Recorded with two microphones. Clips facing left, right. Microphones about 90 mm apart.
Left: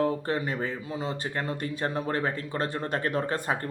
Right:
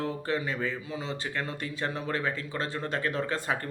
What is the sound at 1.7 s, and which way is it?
Speech, 50° left (ahead or behind).